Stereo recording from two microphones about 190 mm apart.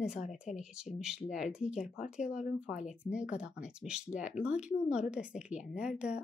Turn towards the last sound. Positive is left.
turn(degrees=-5)  # may be behind; listen again after turning